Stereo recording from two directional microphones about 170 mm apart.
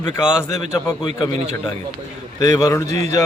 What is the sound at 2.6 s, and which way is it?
Speech, 20° left (ahead or behind).